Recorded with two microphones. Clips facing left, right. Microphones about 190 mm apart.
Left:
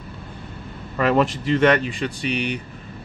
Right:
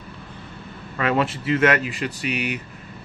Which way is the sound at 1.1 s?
Centre (ahead or behind).